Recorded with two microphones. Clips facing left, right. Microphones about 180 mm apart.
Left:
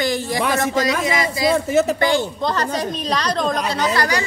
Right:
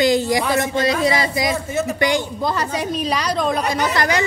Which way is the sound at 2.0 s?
15° right (ahead or behind).